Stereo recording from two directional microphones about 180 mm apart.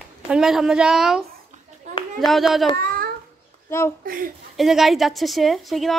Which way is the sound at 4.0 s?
50° right (ahead or behind).